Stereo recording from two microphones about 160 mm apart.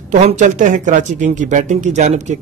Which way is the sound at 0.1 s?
50° right (ahead or behind).